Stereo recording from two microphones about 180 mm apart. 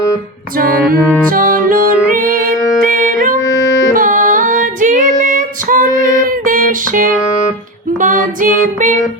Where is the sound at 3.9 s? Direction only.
50° right (ahead or behind).